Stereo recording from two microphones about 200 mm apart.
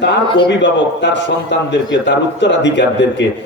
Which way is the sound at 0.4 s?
60° left (ahead or behind).